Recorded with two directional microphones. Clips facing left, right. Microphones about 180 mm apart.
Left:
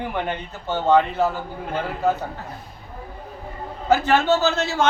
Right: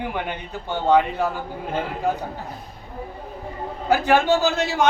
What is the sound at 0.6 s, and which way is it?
Speech, 15° right (ahead or behind).